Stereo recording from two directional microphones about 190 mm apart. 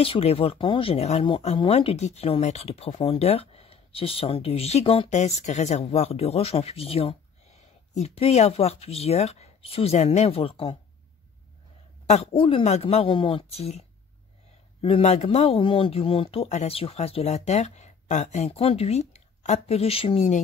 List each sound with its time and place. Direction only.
0.0 s speech: 30° left (ahead or behind)
12.1 s speech: 30° left (ahead or behind)